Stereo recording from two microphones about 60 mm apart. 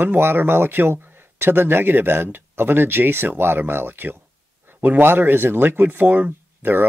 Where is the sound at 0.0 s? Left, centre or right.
Right.